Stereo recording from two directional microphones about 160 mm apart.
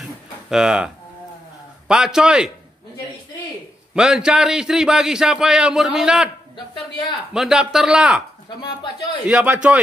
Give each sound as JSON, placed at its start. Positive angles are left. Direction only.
{"t": 0.0, "sound": "a sound", "side_deg": -5}
{"t": 1.9, "sound": "a man's voice", "side_deg": -5}
{"t": 3.9, "sound": "a man's voice", "side_deg": -5}
{"t": 6.5, "sound": "speech", "side_deg": 30}
{"t": 7.3, "sound": "a man's voice", "side_deg": -5}
{"t": 9.3, "sound": "a man's voice", "side_deg": -10}